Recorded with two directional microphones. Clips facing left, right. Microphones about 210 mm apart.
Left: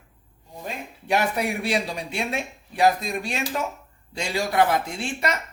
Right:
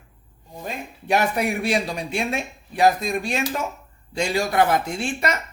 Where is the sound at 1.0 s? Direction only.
45° right (ahead or behind).